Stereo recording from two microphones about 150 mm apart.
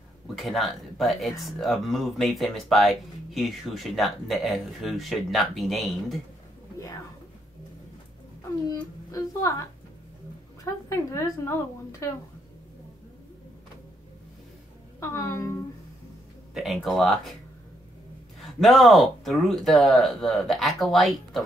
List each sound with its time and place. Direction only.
0.4 s speech: centre (ahead or behind)
8.6 s a sound: 25° left (ahead or behind)
10.6 s a woman's voice: 20° left (ahead or behind)
15.0 s a woman's voice: 20° left (ahead or behind)
16.5 s speech: centre (ahead or behind)
18.4 s speech: centre (ahead or behind)